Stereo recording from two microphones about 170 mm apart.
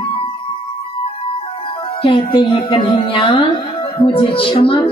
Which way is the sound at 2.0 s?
30° left (ahead or behind).